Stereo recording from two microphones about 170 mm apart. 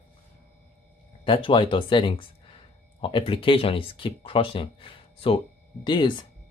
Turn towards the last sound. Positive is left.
turn(degrees=25)  # may be behind; listen again after turning